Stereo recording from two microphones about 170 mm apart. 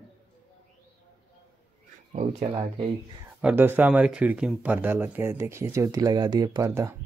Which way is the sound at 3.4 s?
10° right (ahead or behind).